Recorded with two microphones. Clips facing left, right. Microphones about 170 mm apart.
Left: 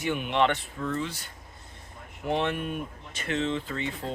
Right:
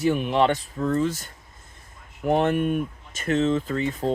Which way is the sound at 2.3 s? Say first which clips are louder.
Right 7 dB; 45° right (ahead or behind).